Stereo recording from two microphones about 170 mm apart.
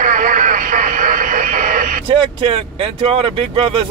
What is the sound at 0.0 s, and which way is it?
Radio, 50° right (ahead or behind).